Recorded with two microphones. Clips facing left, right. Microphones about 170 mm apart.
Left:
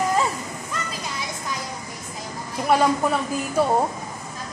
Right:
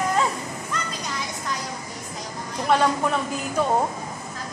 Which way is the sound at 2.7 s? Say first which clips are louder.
Left 1 dB; 10° left (ahead or behind).